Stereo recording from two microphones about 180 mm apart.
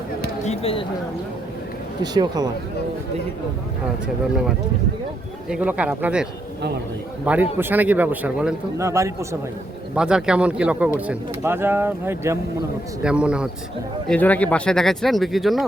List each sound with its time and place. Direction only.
0.4 s a sound: 35° left (ahead or behind)
2.0 s speech: 20° right (ahead or behind)
5.5 s speech: 5° right (ahead or behind)
7.3 s speech: 5° right (ahead or behind)
9.9 s speech: 5° right (ahead or behind)
14.1 s speech: 10° left (ahead or behind)